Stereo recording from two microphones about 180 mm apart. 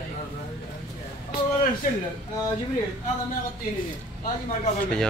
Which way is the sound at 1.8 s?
50° left (ahead or behind).